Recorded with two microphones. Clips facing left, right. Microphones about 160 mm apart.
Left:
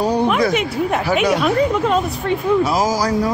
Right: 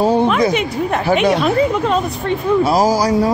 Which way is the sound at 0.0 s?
25° right (ahead or behind).